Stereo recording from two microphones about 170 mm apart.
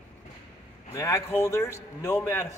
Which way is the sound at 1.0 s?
15° left (ahead or behind).